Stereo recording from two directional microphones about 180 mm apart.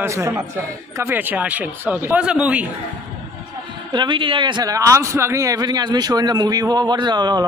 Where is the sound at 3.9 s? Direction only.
25° right (ahead or behind).